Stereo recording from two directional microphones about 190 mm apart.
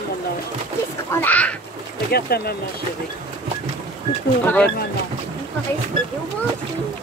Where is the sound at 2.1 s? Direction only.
55° left (ahead or behind).